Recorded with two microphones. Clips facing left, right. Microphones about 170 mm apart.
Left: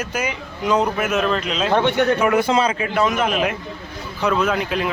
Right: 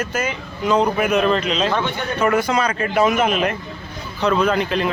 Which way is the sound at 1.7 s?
70° left (ahead or behind).